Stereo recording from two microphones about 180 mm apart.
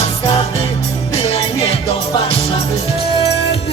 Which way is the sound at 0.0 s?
30° left (ahead or behind).